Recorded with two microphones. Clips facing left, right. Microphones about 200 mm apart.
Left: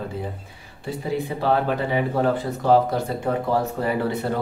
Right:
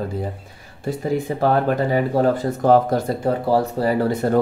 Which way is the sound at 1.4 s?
45° right (ahead or behind).